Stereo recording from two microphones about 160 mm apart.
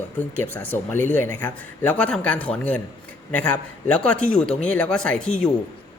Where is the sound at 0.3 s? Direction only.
10° left (ahead or behind).